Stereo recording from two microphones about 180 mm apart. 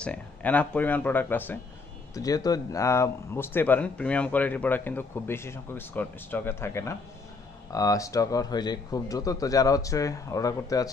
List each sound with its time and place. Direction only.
0.0 s speech: 10° left (ahead or behind)